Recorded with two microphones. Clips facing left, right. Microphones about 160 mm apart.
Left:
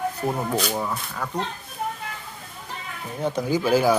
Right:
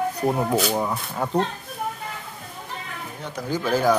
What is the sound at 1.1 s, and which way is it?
Speech, 25° right (ahead or behind).